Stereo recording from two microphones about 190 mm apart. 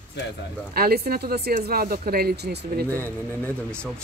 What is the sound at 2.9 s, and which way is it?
Speech, 10° left (ahead or behind).